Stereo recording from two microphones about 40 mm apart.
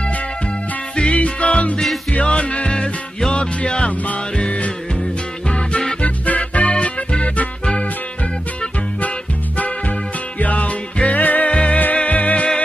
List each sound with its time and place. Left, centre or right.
0.9 s music: left
3.9 s music: left
6.7 s music: left
10.4 s music: left
11.5 s music: left